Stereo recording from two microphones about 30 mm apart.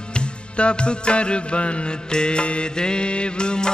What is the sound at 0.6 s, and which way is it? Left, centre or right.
Music, left.